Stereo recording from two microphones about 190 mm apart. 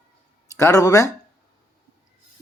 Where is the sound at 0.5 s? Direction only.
15° left (ahead or behind).